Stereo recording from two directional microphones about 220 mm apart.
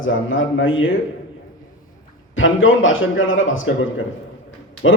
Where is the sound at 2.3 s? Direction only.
60° left (ahead or behind).